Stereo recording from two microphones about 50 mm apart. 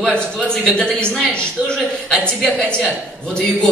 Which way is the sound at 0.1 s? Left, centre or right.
Centre.